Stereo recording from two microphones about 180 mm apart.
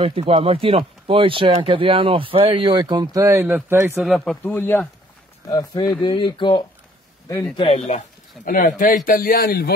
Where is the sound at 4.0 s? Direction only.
Centre (ahead or behind).